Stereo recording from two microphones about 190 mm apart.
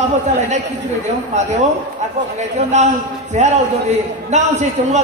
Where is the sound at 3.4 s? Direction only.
35° right (ahead or behind).